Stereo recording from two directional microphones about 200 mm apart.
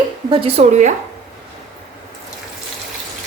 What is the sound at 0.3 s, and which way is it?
Speech, 30° right (ahead or behind).